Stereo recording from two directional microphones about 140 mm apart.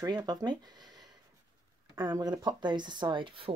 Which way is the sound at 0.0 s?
30° right (ahead or behind).